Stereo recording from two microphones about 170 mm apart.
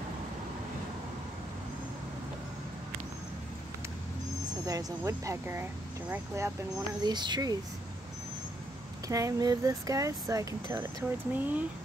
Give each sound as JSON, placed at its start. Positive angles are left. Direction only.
{"t": 4.6, "sound": "speech", "side_deg": -20}
{"t": 7.0, "sound": "speech", "side_deg": -25}
{"t": 9.0, "sound": "speech", "side_deg": -20}